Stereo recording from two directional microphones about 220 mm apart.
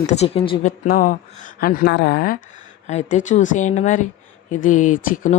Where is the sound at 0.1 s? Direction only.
25° left (ahead or behind).